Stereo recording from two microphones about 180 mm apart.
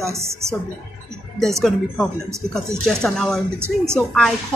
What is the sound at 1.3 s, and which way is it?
A woman's voice, centre (ahead or behind).